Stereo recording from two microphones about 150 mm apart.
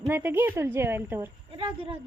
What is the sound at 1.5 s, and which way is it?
Speech, 35° right (ahead or behind).